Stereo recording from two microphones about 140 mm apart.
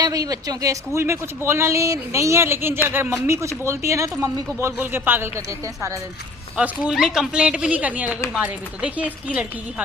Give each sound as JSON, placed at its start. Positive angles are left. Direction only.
{"t": 0.0, "sound": "speech", "side_deg": -25}
{"t": 6.6, "sound": "speech", "side_deg": -5}